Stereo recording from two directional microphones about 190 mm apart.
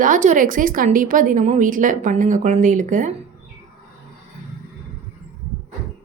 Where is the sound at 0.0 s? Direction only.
40° right (ahead or behind).